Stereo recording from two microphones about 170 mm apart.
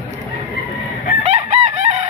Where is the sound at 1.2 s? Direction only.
45° right (ahead or behind).